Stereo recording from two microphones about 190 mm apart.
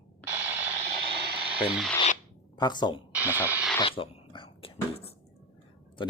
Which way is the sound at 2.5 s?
25° left (ahead or behind).